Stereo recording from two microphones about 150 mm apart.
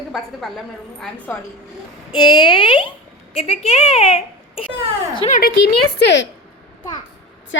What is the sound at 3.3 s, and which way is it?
A woman's voice, 45° left (ahead or behind).